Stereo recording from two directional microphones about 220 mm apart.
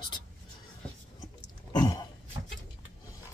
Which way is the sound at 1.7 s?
20° left (ahead or behind).